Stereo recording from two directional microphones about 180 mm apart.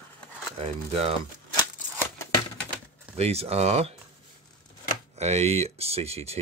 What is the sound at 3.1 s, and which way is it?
Speech, 35° right (ahead or behind).